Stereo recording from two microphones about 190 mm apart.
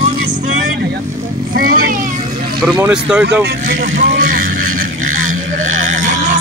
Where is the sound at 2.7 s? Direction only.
5° right (ahead or behind).